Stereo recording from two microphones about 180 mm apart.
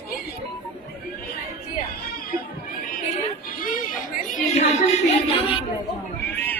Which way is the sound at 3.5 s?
50° left (ahead or behind).